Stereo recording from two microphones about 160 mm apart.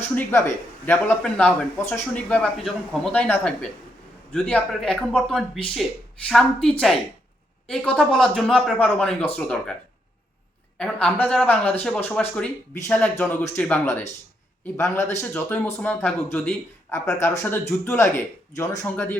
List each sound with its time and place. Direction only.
0.2 s a man's voice: 15° left (ahead or behind)
10.8 s speech: 5° left (ahead or behind)
15.2 s speech: 10° left (ahead or behind)